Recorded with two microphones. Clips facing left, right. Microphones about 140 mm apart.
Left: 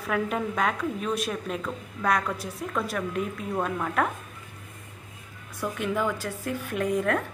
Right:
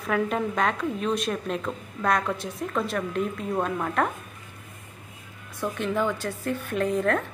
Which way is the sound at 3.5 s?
5° right (ahead or behind).